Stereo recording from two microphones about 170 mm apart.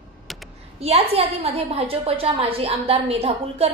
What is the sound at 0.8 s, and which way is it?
A woman's voice, 35° right (ahead or behind).